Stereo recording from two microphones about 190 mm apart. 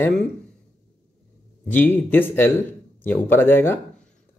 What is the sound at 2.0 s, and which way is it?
Speech, 10° left (ahead or behind).